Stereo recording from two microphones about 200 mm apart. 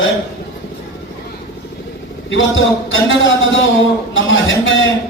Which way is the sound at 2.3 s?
70° left (ahead or behind).